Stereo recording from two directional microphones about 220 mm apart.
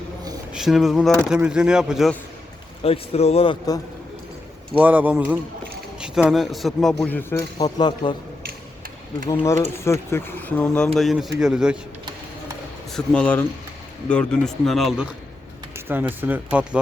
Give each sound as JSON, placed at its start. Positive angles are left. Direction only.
{"t": 0.5, "sound": "speech", "side_deg": 0}
{"t": 2.8, "sound": "a man's voice", "side_deg": 25}
{"t": 4.8, "sound": "speech", "side_deg": -5}
{"t": 9.7, "sound": "speech", "side_deg": 10}
{"t": 12.9, "sound": "speech", "side_deg": 5}